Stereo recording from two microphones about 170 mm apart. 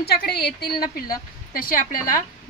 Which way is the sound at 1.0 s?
55° left (ahead or behind).